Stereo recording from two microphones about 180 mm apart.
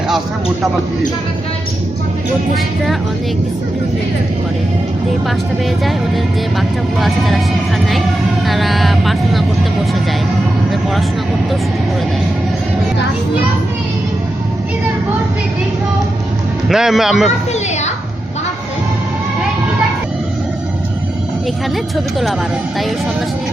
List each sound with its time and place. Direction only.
6.6 s speech: centre (ahead or behind)
8.4 s speech: centre (ahead or behind)
16.6 s speech: centre (ahead or behind)
17.5 s a child's voice: 40° left (ahead or behind)